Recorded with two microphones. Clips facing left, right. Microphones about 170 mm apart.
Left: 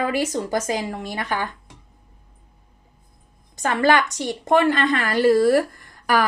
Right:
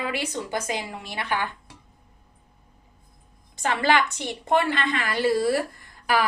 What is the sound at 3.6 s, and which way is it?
A woman's voice, 45° left (ahead or behind).